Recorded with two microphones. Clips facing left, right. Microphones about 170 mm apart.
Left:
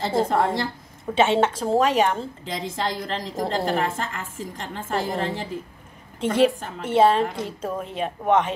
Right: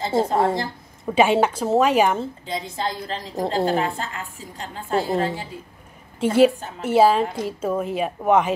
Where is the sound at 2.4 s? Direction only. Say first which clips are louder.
Even; 90° left.